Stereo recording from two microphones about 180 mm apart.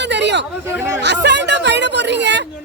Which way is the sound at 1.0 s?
70° right (ahead or behind).